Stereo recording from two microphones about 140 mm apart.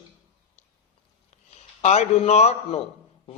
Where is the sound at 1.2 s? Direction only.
50° left (ahead or behind).